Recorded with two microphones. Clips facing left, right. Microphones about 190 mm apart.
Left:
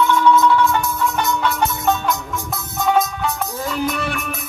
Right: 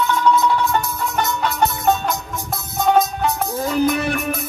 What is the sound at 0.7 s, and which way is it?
Music, 40° right (ahead or behind).